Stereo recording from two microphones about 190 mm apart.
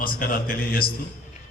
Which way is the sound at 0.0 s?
50° left (ahead or behind).